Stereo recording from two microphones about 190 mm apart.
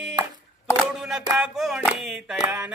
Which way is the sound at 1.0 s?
Centre (ahead or behind).